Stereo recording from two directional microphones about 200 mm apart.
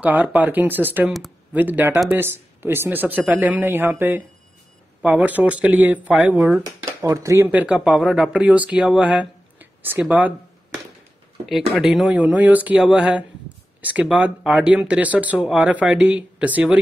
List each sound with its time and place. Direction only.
0.0 s speech: 10° right (ahead or behind)
11.4 s speech: centre (ahead or behind)